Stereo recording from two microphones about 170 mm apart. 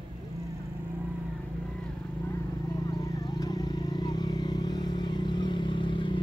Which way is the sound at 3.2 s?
25° left (ahead or behind).